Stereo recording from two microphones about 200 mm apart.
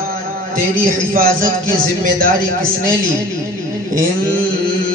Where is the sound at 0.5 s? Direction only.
45° right (ahead or behind).